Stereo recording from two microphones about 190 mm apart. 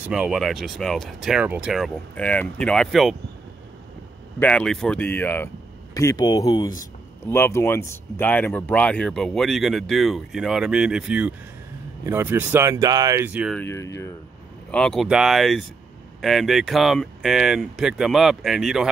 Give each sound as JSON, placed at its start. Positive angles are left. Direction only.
{"t": 0.0, "sound": "speech", "side_deg": -5}
{"t": 4.4, "sound": "speech", "side_deg": 5}
{"t": 13.5, "sound": "speech", "side_deg": 10}
{"t": 14.7, "sound": "speech", "side_deg": 5}